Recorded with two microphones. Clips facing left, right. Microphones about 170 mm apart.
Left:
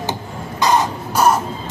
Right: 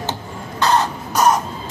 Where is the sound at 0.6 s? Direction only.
10° left (ahead or behind).